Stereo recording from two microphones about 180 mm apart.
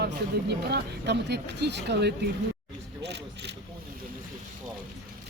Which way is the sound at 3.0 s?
70° right (ahead or behind).